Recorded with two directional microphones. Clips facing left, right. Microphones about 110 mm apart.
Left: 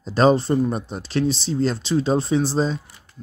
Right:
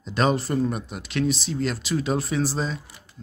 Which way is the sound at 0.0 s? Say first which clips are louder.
Left 6 dB; 35° left (ahead or behind).